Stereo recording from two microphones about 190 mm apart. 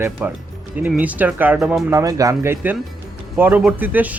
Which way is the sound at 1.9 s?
15° right (ahead or behind).